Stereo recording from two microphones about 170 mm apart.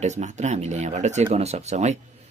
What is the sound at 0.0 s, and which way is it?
Speech, 45° right (ahead or behind).